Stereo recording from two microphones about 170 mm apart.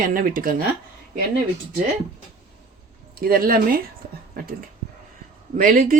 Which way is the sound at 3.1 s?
60° right (ahead or behind).